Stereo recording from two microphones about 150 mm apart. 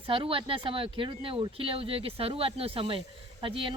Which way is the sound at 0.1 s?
35° right (ahead or behind).